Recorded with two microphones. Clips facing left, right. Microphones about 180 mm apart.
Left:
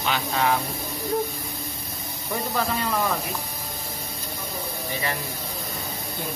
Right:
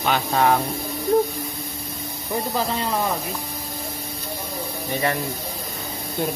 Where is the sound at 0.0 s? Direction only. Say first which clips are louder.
Right 5 dB; 50° right (ahead or behind).